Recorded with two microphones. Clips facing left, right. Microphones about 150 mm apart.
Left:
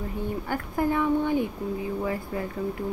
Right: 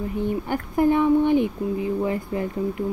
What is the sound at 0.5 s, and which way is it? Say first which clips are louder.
Speech: right 6 dB; 20° right (ahead or behind).